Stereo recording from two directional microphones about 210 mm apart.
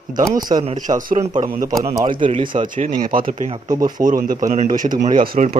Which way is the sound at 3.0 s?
40° right (ahead or behind).